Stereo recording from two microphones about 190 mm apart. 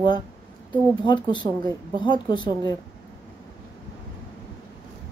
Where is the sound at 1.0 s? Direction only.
25° left (ahead or behind).